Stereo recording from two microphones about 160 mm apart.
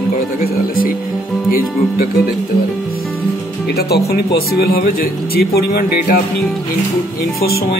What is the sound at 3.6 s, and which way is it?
Speech, 85° left.